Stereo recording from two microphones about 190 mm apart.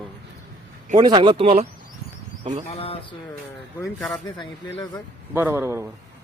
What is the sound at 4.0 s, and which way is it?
Speech, centre (ahead or behind).